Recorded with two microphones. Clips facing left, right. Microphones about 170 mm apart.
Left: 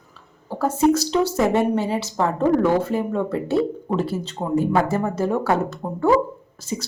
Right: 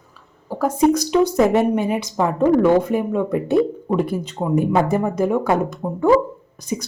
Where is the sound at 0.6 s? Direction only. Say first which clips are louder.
Right 1 dB; 15° right (ahead or behind).